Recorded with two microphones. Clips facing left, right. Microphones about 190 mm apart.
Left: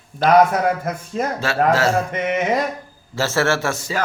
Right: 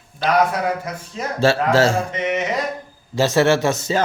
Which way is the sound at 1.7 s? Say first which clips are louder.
Right 2 dB; 30° right (ahead or behind).